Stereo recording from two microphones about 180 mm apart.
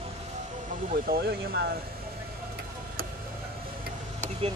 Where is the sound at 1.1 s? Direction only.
60° right (ahead or behind).